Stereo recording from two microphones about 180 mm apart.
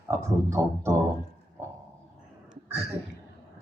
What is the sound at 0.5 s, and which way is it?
Speech, 15° right (ahead or behind).